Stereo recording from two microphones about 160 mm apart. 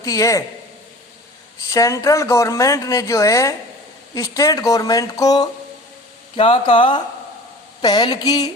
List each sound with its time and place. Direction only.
0.0 s speech: 20° left (ahead or behind)
1.7 s speech: 20° left (ahead or behind)
6.3 s speech: 35° left (ahead or behind)